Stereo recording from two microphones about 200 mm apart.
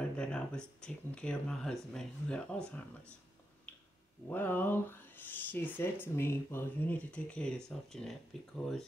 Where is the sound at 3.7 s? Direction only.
5° left (ahead or behind).